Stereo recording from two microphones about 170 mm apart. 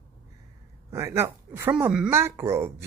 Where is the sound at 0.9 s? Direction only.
15° right (ahead or behind).